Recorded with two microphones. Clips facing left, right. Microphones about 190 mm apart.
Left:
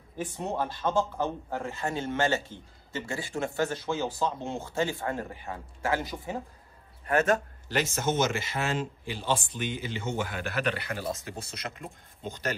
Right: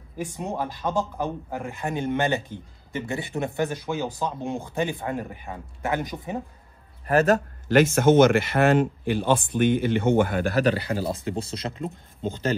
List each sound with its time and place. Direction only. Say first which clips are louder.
0.2 s speech: right 2 dB; 15° right (ahead or behind)
7.1 s a man's voice: right 5 dB; 35° right (ahead or behind)
7.6 s speech: right 16 dB; 55° right (ahead or behind)
10.4 s a man's voice: right 8 dB; 35° right (ahead or behind)